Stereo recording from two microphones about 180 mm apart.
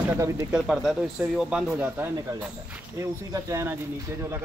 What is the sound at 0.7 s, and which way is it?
Speech, centre (ahead or behind).